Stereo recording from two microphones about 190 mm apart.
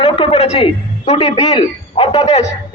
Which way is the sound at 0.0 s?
30° left (ahead or behind).